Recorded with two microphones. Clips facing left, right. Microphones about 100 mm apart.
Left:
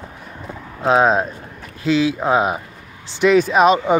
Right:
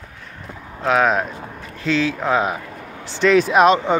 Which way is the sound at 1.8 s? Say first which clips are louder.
Left 3 dB; 10° left (ahead or behind).